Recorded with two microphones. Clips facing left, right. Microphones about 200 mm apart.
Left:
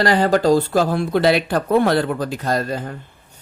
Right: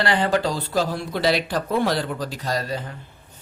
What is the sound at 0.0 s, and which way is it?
Speech, 40° left (ahead or behind).